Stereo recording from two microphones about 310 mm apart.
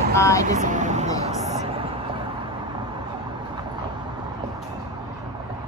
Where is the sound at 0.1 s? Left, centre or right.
Centre.